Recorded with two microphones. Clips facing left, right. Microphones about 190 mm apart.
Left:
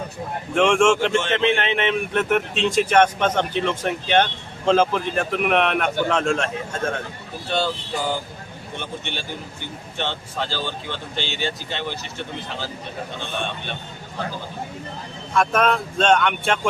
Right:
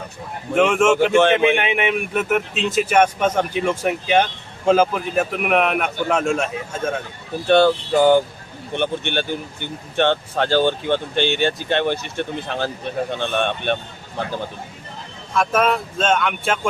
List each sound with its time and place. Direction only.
0.5 s speech: 5° right (ahead or behind)
7.4 s speech: 60° right (ahead or behind)
15.4 s speech: 5° right (ahead or behind)